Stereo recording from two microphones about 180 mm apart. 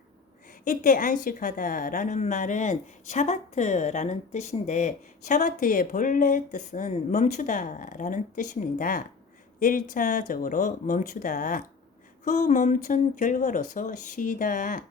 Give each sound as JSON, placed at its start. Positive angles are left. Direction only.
{"t": 0.6, "sound": "a woman's voice", "side_deg": 50}